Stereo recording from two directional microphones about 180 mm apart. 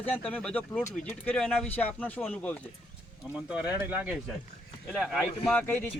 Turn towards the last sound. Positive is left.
turn(degrees=10)  # may be behind; listen again after turning